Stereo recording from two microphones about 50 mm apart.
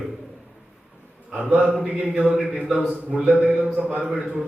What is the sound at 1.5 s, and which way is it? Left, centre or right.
A man's voice, centre.